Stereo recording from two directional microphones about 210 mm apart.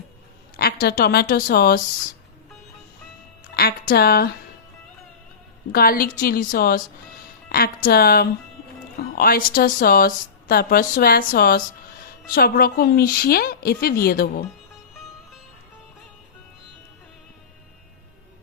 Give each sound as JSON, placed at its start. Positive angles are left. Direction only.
{"t": 0.5, "sound": "a woman's voice", "side_deg": 45}
{"t": 3.5, "sound": "speech", "side_deg": 50}
{"t": 5.7, "sound": "speech", "side_deg": 45}